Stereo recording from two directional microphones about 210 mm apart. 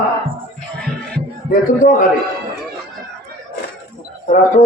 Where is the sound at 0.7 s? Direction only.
5° left (ahead or behind).